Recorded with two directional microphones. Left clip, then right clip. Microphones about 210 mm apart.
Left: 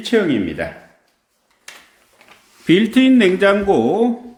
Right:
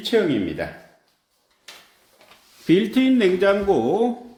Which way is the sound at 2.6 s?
15° left (ahead or behind).